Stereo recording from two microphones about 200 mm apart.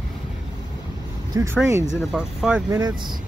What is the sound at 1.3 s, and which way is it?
Speech, 15° right (ahead or behind).